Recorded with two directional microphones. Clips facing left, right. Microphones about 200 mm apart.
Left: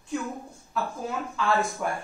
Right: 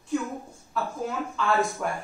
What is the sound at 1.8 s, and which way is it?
Speech, 5° left (ahead or behind).